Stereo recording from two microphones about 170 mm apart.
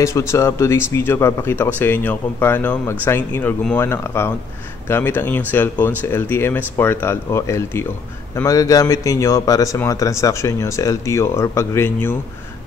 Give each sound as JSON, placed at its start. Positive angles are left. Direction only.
{"t": 0.0, "sound": "speech", "side_deg": 15}